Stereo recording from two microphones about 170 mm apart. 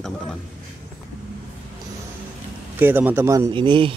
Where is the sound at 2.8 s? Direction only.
10° right (ahead or behind).